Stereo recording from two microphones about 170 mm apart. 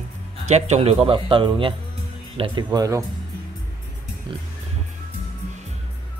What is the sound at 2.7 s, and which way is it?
Speech, 20° right (ahead or behind).